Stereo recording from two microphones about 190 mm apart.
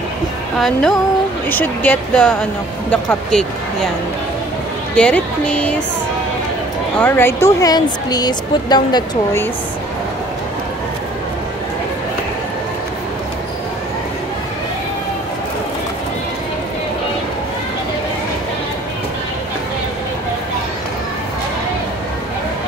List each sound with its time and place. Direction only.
0.6 s speech: centre (ahead or behind)
4.9 s speech: 5° left (ahead or behind)
7.0 s speech: 10° left (ahead or behind)